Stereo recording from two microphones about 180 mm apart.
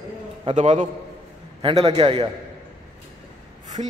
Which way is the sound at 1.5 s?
30° right (ahead or behind).